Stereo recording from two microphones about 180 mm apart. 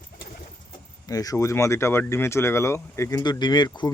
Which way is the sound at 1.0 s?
20° left (ahead or behind).